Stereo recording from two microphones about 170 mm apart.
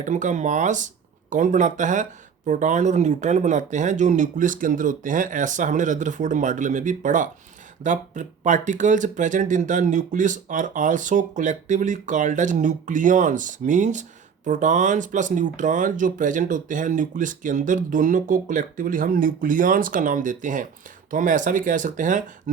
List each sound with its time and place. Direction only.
0.0 s speech: 45° right (ahead or behind)